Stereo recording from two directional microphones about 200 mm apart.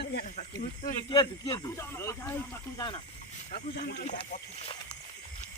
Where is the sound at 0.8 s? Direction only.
25° left (ahead or behind).